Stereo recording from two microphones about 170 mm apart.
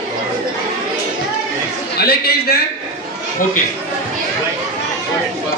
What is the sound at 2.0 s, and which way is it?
Speech, 65° left (ahead or behind).